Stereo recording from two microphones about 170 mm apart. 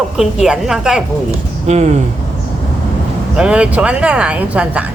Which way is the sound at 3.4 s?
5° right (ahead or behind).